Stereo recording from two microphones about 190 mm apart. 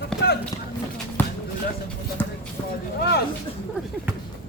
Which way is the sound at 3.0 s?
60° left (ahead or behind).